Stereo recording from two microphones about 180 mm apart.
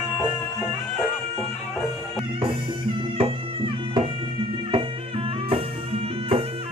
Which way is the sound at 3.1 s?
30° right (ahead or behind).